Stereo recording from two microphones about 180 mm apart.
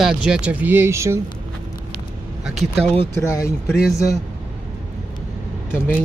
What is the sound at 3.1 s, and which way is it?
Speech, 15° left (ahead or behind).